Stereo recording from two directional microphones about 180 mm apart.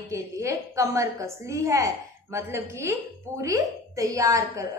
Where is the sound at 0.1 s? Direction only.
15° right (ahead or behind).